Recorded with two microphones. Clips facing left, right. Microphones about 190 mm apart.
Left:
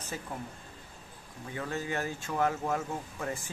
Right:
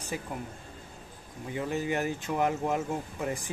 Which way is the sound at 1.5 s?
15° right (ahead or behind).